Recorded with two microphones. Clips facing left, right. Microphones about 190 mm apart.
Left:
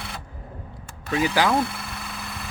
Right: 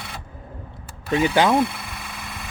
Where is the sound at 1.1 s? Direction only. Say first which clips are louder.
Right 3 dB; 25° right (ahead or behind).